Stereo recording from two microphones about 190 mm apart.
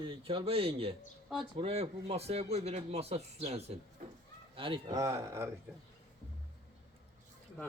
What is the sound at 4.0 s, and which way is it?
Sheep, 40° right (ahead or behind).